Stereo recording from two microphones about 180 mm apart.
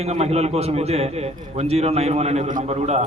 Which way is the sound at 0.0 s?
35° right (ahead or behind).